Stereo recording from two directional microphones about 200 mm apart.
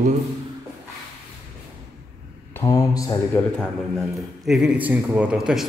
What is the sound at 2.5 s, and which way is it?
Speech, 15° left (ahead or behind).